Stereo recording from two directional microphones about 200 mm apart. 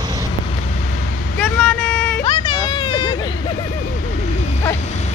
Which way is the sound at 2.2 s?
25° left (ahead or behind).